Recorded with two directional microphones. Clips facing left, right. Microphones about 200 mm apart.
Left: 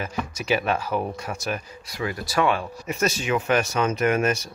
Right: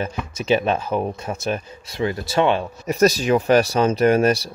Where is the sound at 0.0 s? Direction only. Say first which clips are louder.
Right 3 dB; 25° right (ahead or behind).